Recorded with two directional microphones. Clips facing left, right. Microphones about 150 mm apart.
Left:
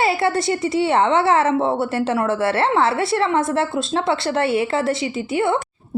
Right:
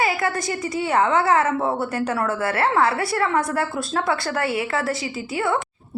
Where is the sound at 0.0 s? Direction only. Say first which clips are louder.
Left 4 dB; 30° left (ahead or behind).